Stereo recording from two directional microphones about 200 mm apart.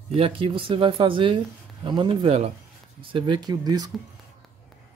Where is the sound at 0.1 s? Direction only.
30° right (ahead or behind).